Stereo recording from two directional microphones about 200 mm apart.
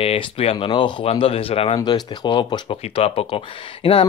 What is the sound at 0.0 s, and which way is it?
Speech, 30° left (ahead or behind).